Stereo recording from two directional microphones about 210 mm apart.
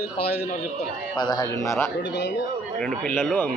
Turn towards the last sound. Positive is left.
turn(degrees=10)  # may be behind; listen again after turning